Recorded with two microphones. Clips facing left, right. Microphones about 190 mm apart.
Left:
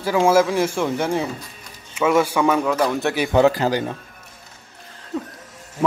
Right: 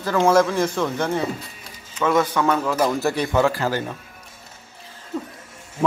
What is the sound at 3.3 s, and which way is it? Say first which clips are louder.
Speech: left 7 dB; 20° left (ahead or behind).